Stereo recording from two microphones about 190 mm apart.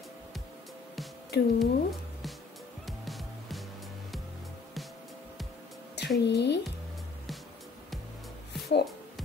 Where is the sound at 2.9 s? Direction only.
Centre (ahead or behind).